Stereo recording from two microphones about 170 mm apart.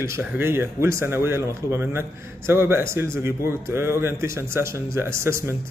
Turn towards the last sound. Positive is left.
turn(degrees=-15)  # may be behind; listen again after turning